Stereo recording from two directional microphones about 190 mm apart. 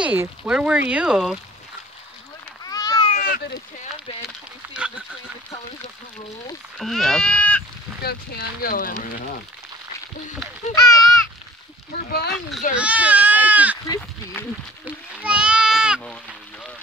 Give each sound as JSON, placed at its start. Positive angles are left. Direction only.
{"t": 0.0, "sound": "speech", "side_deg": -10}
{"t": 2.6, "sound": "a sound", "side_deg": 20}
{"t": 3.2, "sound": "speech", "side_deg": 50}
{"t": 4.7, "sound": "a sound", "side_deg": -5}
{"t": 6.8, "sound": "speech", "side_deg": 0}
{"t": 8.0, "sound": "speech", "side_deg": 55}
{"t": 10.7, "sound": "speech", "side_deg": 20}
{"t": 12.3, "sound": "speech", "side_deg": 0}
{"t": 12.7, "sound": "goat", "side_deg": -5}
{"t": 14.9, "sound": "a sound", "side_deg": -5}